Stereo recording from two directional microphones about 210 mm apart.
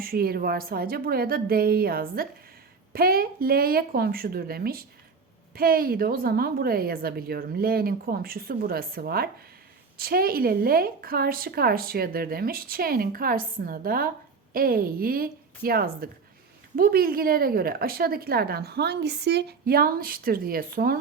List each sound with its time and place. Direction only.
0.0 s a woman's voice: 45° right (ahead or behind)